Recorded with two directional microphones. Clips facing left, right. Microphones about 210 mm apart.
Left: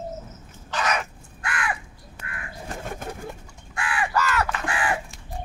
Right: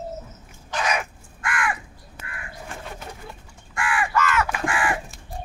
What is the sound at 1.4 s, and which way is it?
Crow, 35° left (ahead or behind).